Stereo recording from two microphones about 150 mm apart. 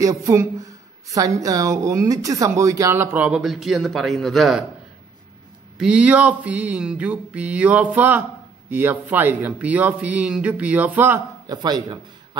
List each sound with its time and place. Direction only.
0.0 s speech: 20° right (ahead or behind); by 4.6 s centre (ahead or behind)
5.8 s speech: 5° right (ahead or behind)
11.4 s speech: 25° right (ahead or behind)